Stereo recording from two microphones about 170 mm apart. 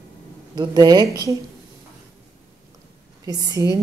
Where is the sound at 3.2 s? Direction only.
20° right (ahead or behind).